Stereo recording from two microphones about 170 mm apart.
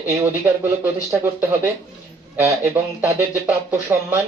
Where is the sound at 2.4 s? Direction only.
15° right (ahead or behind).